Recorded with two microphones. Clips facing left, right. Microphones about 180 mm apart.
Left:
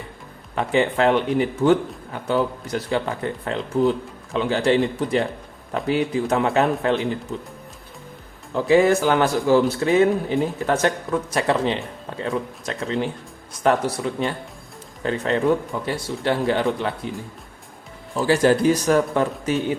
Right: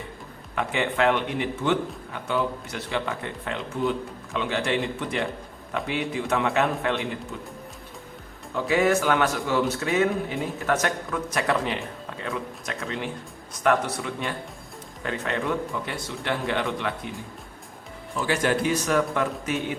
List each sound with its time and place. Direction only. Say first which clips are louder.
0.5 s speech: left 6 dB; 35° left (ahead or behind)
8.5 s speech: left 6 dB; 30° left (ahead or behind)